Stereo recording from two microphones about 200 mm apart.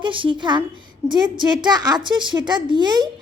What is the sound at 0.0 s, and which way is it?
A woman's voice, 25° right (ahead or behind).